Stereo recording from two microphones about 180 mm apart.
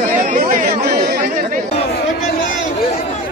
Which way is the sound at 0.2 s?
45° right (ahead or behind).